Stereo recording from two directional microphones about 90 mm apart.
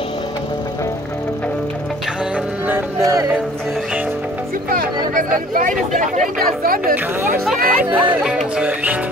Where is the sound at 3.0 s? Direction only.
40° right (ahead or behind).